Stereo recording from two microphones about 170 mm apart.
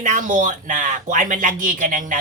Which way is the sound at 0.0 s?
50° right (ahead or behind).